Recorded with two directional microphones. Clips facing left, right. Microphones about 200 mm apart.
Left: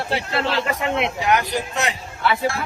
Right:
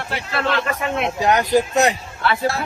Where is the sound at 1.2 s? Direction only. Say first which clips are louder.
Right 9 dB; 40° right (ahead or behind).